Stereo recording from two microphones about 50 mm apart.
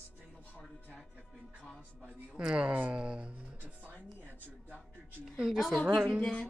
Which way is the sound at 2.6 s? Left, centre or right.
Right.